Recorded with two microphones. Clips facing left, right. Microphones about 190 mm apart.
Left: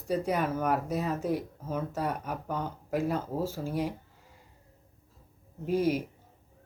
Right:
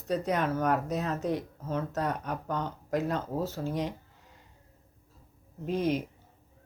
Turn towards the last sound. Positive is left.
turn(degrees=10)  # may be behind; listen again after turning